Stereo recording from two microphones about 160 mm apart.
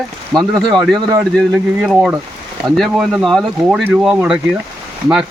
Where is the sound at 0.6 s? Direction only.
Centre (ahead or behind).